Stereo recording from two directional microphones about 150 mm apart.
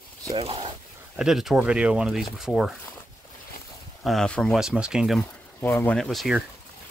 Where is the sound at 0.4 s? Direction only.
40° right (ahead or behind).